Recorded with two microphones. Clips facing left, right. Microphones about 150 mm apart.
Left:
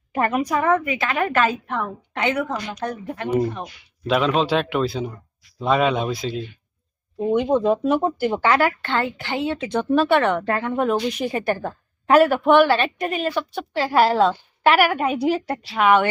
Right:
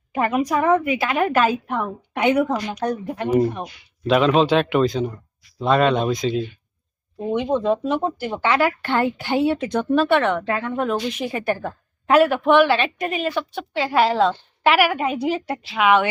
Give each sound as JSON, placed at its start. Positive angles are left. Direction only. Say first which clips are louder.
{"t": 0.1, "sound": "a woman's voice", "louder": "right 1 dB", "side_deg": -5}
{"t": 3.3, "sound": "a woman's voice", "louder": "right 3 dB", "side_deg": -5}
{"t": 9.6, "sound": "a woman's voice", "louder": "even", "side_deg": 5}